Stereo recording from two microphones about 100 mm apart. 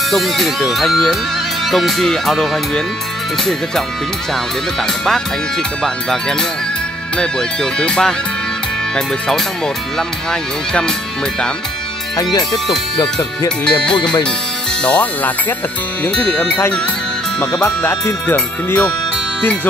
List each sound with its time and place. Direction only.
0.1 s speech: centre (ahead or behind)
7.2 s speech: 10° left (ahead or behind)
12.2 s speech: 40° left (ahead or behind)
13.7 s speech: 10° left (ahead or behind)
17.8 s speech: 20° left (ahead or behind)